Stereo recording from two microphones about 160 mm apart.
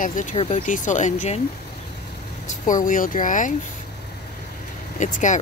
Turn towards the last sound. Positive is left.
turn(degrees=50)  # may be behind; listen again after turning